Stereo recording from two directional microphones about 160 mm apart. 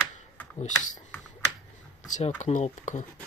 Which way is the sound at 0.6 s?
50° left (ahead or behind).